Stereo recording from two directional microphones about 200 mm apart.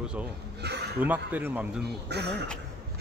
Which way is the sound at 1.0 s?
10° right (ahead or behind).